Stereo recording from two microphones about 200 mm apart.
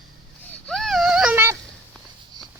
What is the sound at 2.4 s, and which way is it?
Walk, 20° right (ahead or behind).